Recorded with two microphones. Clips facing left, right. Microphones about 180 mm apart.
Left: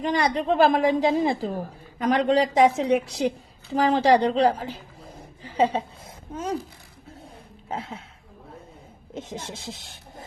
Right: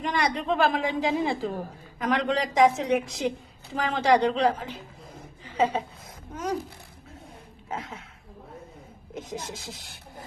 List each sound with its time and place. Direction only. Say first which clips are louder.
0.0 s a woman's voice: left 4 dB; 35° left (ahead or behind)
7.7 s a woman's voice: left 2 dB; 30° left (ahead or behind)
9.1 s speech: left 1 dB; 25° left (ahead or behind)